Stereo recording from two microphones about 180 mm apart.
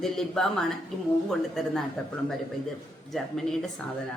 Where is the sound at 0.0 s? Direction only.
Centre (ahead or behind).